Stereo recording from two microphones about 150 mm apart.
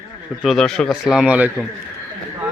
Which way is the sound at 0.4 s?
5° left (ahead or behind).